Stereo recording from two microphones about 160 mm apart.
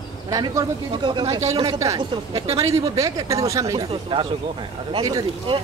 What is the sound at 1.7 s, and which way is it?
Speech, 20° right (ahead or behind).